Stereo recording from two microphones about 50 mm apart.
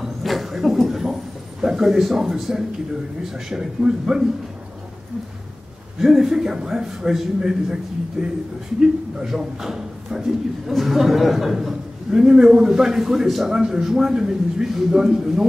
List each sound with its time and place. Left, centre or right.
0.0 s a sound: centre
1.6 s a man's voice: centre
5.9 s a man's voice: centre